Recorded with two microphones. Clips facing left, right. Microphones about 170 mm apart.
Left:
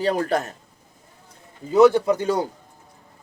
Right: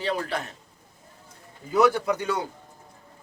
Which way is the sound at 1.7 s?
25° left (ahead or behind).